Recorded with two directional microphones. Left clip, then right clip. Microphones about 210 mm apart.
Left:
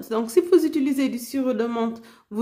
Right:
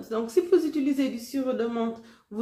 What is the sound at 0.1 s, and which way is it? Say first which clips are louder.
A woman's voice: left 4 dB; 45° left (ahead or behind).